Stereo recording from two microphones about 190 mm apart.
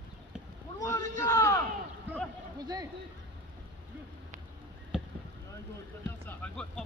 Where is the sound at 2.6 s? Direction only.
20° right (ahead or behind).